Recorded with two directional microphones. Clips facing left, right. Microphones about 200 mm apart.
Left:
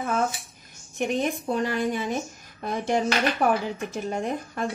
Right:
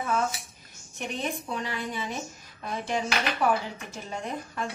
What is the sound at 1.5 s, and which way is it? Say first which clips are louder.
Speech: left 8 dB; 45° left (ahead or behind).